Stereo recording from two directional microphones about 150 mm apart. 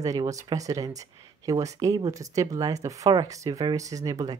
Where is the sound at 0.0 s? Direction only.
25° right (ahead or behind).